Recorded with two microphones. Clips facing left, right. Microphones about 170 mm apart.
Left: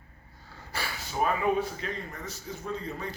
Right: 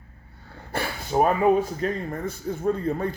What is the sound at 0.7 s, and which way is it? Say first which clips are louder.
Speech: right 10 dB; 55° right (ahead or behind).